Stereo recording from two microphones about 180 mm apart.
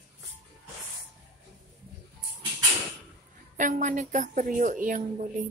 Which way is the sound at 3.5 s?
45° right (ahead or behind).